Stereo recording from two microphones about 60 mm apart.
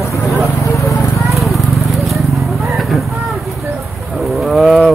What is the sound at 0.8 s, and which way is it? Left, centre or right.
Horse, left.